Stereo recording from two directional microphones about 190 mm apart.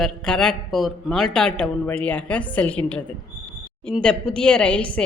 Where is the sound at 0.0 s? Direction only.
5° left (ahead or behind).